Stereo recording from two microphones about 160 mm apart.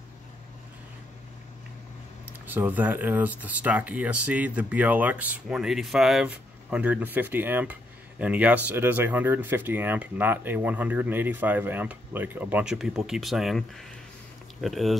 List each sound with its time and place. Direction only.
2.4 s speech: 10° right (ahead or behind)